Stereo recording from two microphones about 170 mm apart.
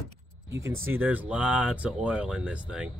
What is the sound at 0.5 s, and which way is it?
Speech, 15° right (ahead or behind).